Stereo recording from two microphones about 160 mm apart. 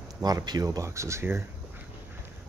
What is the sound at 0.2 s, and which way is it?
Speech, 25° right (ahead or behind).